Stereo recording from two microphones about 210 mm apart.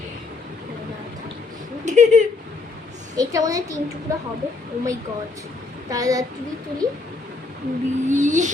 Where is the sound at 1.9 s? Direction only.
35° right (ahead or behind).